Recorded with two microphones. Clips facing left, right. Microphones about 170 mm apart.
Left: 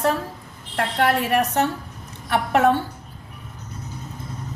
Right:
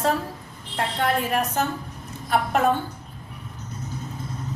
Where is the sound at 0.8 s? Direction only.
80° left.